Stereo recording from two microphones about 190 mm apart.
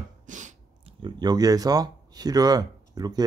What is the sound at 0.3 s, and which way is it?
Sneeze, 40° right (ahead or behind).